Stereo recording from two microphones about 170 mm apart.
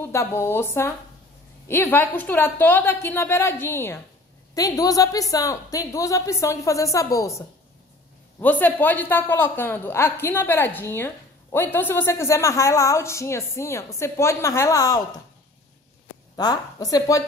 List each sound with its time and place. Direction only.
0.0 s a man's voice: 15° left (ahead or behind)
16.3 s a woman's voice: 25° left (ahead or behind)